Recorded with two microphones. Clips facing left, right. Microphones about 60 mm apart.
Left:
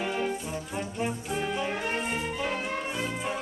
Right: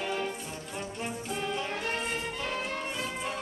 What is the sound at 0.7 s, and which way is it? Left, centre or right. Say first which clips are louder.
Brass instrument: left 4 dB; centre.